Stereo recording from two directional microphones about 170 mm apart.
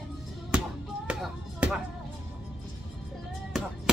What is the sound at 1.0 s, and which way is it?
Chop, 5° right (ahead or behind).